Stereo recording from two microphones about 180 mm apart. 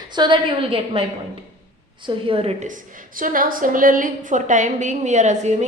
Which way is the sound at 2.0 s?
30° right (ahead or behind).